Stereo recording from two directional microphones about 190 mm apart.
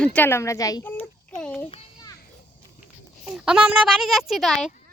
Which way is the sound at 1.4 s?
5° left (ahead or behind).